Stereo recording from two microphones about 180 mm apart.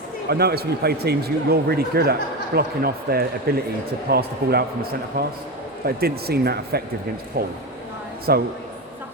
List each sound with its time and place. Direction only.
0.3 s speech: 60° right (ahead or behind)